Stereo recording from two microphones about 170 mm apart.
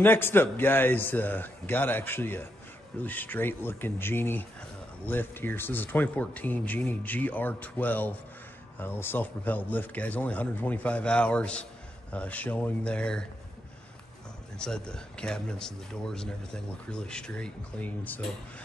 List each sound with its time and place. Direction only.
0.0 s speech: 15° left (ahead or behind)
14.6 s speech: 5° left (ahead or behind)